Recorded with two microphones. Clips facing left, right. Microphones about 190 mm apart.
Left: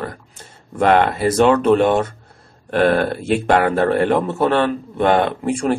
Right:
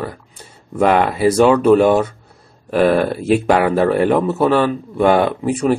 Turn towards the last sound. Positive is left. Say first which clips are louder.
# right 2 dB
turn(degrees=-5)  # may be behind; listen again after turning